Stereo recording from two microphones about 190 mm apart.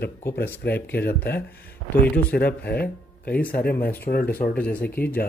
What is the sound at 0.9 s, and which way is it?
Speech, 55° left (ahead or behind).